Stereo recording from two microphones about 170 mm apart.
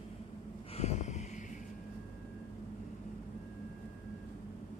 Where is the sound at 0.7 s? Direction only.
40° left (ahead or behind).